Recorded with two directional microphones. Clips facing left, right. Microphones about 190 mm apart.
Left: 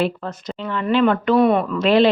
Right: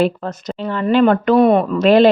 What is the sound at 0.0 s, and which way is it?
Speech, 40° right (ahead or behind).